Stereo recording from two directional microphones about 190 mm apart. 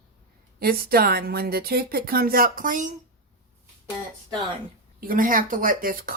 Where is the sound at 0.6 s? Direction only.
55° right (ahead or behind).